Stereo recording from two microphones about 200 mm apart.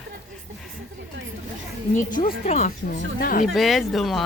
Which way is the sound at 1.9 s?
40° left (ahead or behind).